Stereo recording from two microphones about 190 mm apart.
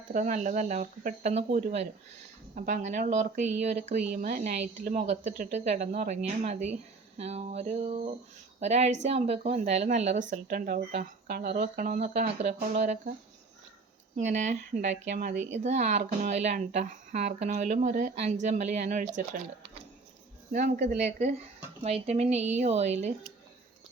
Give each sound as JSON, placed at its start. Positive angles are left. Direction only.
{"t": 0.1, "sound": "speech", "side_deg": -40}
{"t": 11.6, "sound": "speech", "side_deg": -40}
{"t": 14.2, "sound": "speech", "side_deg": -40}
{"t": 20.5, "sound": "speech", "side_deg": -40}